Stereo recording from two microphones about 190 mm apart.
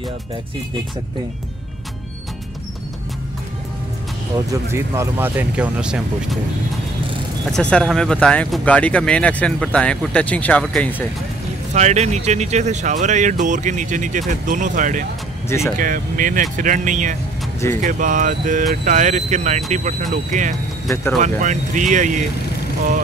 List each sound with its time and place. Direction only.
4.5 s speech: 15° right (ahead or behind)
7.5 s speech: 5° left (ahead or behind)
11.7 s speech: 35° right (ahead or behind)
15.4 s speech: 15° left (ahead or behind)
15.8 s speech: 45° right (ahead or behind)